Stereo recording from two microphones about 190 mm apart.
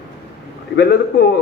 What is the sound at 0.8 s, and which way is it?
Speech, 60° left (ahead or behind).